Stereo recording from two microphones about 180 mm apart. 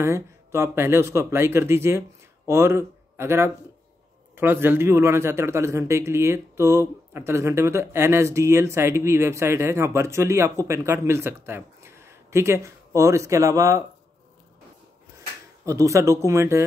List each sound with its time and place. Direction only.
0.0 s a man's voice: 15° right (ahead or behind)
15.6 s a man's voice: 15° right (ahead or behind)